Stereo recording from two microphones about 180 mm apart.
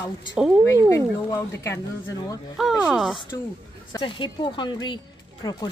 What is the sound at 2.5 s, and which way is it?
Speech, centre (ahead or behind).